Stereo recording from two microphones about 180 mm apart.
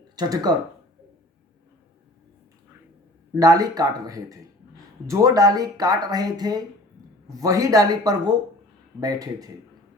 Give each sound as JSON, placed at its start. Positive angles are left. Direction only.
{"t": 0.2, "sound": "speech", "side_deg": -20}
{"t": 3.3, "sound": "speech", "side_deg": -20}